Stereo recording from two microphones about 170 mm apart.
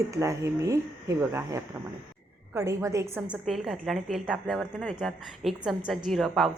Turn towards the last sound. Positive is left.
turn(degrees=0)  # may be behind; listen again after turning